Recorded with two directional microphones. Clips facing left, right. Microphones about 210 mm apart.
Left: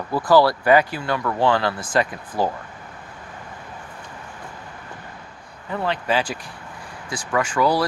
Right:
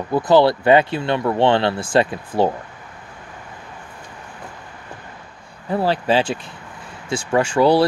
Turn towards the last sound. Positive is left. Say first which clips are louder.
# right 5 dB
turn(degrees=-30)  # may be behind; listen again after turning